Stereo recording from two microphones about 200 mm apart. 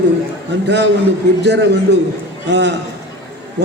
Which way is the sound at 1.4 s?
60° right (ahead or behind).